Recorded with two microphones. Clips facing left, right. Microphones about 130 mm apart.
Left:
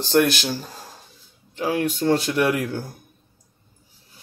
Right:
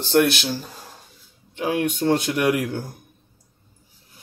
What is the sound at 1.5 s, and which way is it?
Music, 35° left (ahead or behind).